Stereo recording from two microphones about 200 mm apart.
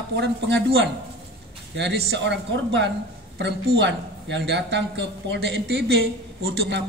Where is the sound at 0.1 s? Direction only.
60° right (ahead or behind).